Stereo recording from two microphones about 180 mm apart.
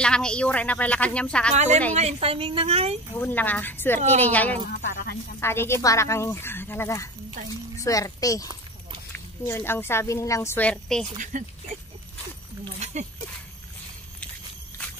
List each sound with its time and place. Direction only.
0.0 s a woman's voice: 5° left (ahead or behind)
1.5 s a woman's voice: 40° right (ahead or behind)
3.2 s a woman's voice: 10° left (ahead or behind)
4.8 s speech: 55° left (ahead or behind)
5.4 s a woman's voice: 15° left (ahead or behind)
11.3 s speech: 45° right (ahead or behind)